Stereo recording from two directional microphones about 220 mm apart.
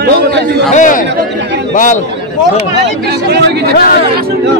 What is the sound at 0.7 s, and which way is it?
A man's voice, 35° left (ahead or behind).